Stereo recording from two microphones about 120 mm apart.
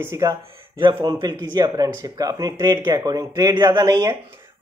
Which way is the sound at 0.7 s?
35° right (ahead or behind).